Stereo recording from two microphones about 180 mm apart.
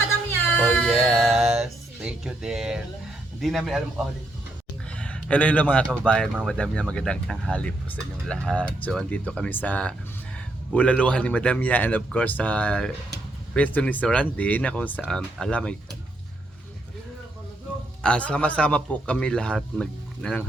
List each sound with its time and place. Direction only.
0.5 s music: 5° left (ahead or behind)
3.4 s speech: centre (ahead or behind)
4.9 s a sound: 5° left (ahead or behind)
6.1 s speech: 5° left (ahead or behind)
18.0 s speech: 5° left (ahead or behind)